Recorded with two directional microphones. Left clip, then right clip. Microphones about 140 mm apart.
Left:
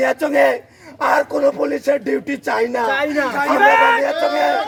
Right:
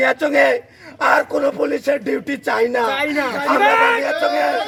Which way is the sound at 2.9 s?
25° right (ahead or behind).